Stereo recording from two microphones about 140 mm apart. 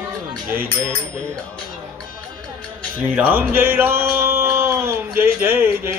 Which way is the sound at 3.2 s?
10° right (ahead or behind).